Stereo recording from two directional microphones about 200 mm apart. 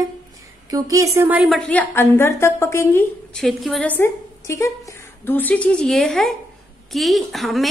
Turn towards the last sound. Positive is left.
turn(degrees=0)  # may be behind; listen again after turning